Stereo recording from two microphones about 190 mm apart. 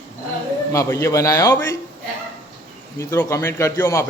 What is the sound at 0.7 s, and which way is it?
Speech, 15° left (ahead or behind).